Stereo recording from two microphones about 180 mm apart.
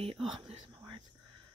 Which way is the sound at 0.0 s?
35° right (ahead or behind).